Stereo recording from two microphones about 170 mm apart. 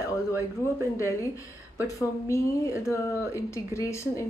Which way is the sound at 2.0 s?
15° left (ahead or behind).